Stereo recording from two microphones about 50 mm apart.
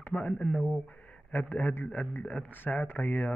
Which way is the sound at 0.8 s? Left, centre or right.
Left.